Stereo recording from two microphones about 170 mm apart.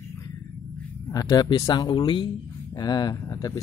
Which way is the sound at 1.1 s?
25° left (ahead or behind).